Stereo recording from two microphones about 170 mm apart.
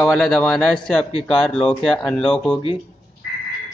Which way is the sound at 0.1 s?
5° left (ahead or behind).